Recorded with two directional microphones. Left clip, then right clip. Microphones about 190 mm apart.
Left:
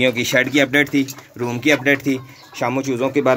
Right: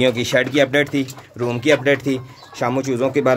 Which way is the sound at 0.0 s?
5° left (ahead or behind).